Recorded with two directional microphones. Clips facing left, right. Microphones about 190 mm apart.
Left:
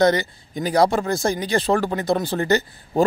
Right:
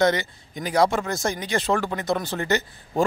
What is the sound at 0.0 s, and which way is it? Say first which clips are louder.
A man's voice: left 3 dB; 35° left (ahead or behind).